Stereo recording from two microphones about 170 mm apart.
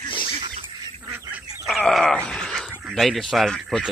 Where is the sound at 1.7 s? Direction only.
Centre (ahead or behind).